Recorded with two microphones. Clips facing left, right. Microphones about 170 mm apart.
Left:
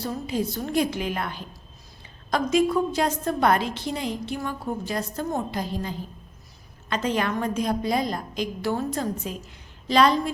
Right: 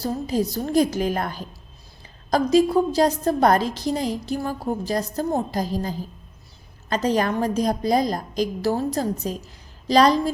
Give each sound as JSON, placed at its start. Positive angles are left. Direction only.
{"t": 0.0, "sound": "a woman's voice", "side_deg": -35}